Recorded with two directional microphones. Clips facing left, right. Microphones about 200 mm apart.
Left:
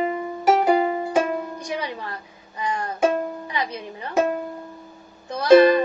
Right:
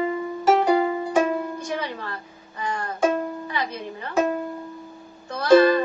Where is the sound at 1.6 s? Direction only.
15° left (ahead or behind).